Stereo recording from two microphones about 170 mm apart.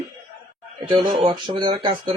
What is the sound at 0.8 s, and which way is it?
Speech, 30° right (ahead or behind).